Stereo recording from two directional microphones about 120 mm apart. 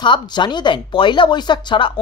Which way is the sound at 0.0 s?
40° left (ahead or behind).